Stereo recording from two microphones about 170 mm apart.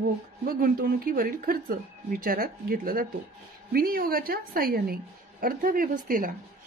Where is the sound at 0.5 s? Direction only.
60° right (ahead or behind).